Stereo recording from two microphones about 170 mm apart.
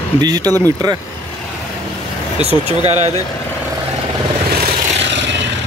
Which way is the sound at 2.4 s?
40° right (ahead or behind).